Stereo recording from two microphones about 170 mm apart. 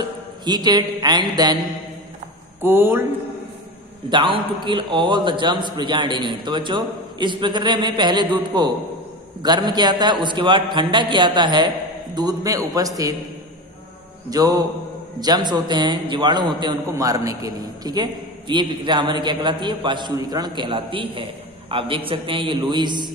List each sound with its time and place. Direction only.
0.5 s a man's voice: 25° right (ahead or behind)
2.6 s speech: 15° right (ahead or behind)
4.1 s a man's voice: 30° right (ahead or behind)
14.3 s a man's voice: 20° right (ahead or behind)